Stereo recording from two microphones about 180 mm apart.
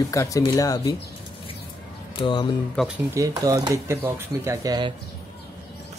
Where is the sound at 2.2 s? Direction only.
25° left (ahead or behind).